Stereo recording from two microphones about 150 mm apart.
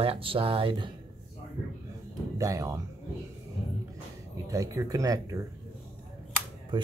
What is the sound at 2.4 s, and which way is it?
Speech, 20° right (ahead or behind).